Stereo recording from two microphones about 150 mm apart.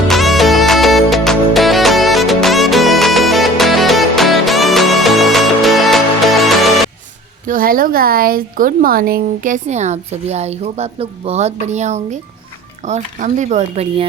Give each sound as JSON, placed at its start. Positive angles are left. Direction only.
{"t": 0.1, "sound": "music", "side_deg": 0}
{"t": 7.4, "sound": "speech", "side_deg": -70}